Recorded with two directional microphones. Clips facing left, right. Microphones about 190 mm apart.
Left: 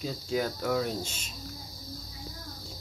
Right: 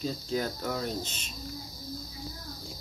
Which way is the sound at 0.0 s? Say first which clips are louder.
Left 1 dB; 10° left (ahead or behind).